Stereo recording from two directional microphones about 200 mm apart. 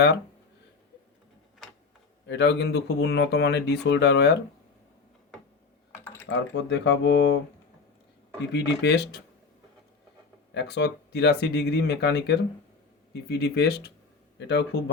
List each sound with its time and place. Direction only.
2.2 s speech: 60° left (ahead or behind)
6.2 s speech: 65° left (ahead or behind)
8.4 s speech: 60° left (ahead or behind)
10.5 s speech: 60° left (ahead or behind)